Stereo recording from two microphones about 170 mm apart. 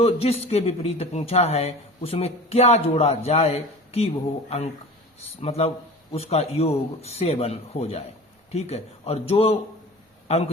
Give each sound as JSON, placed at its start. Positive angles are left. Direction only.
{"t": 0.0, "sound": "a man's voice", "side_deg": 35}